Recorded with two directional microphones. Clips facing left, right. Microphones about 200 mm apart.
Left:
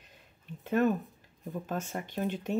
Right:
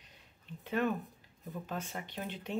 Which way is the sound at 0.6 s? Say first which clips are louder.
Left 6 dB; 45° left (ahead or behind).